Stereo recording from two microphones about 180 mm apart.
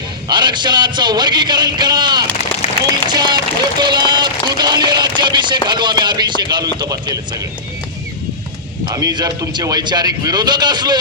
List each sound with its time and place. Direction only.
0.3 s speech: 25° right (ahead or behind)
8.9 s speech: 20° right (ahead or behind)